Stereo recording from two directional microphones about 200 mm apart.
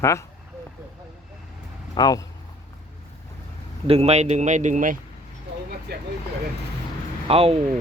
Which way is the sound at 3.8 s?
30° right (ahead or behind).